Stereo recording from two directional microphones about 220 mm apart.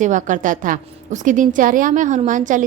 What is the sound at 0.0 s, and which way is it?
A woman's voice, 35° right (ahead or behind).